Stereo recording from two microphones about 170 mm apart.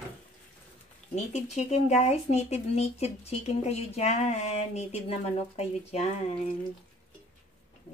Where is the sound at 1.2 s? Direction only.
40° left (ahead or behind).